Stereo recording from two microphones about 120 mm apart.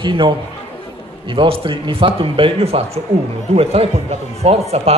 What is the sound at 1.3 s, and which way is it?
A man's voice, 45° right (ahead or behind).